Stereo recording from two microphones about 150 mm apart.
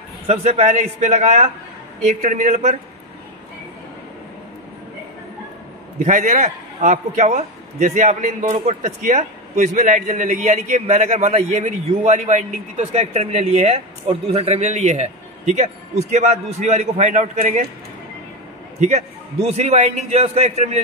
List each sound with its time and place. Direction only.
0.3 s a man's voice: 45° right (ahead or behind)
6.0 s a man's voice: 55° right (ahead or behind)
18.8 s a man's voice: 45° right (ahead or behind)